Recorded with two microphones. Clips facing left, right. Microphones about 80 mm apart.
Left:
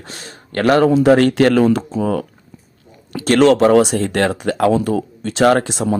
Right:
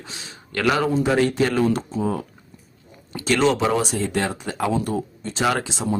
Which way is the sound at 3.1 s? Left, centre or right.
Left.